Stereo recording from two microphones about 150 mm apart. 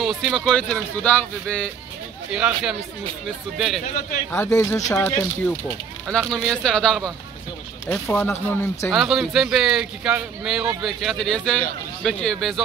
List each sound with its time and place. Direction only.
0.0 s a man's voice: centre (ahead or behind)
2.3 s a man's voice: 5° right (ahead or behind)
4.3 s speech: 15° left (ahead or behind)
4.9 s a man's voice: 10° left (ahead or behind)
8.9 s a man's voice: centre (ahead or behind)